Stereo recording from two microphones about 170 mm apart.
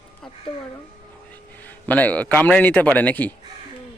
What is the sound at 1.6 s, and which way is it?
A man's voice, 10° left (ahead or behind).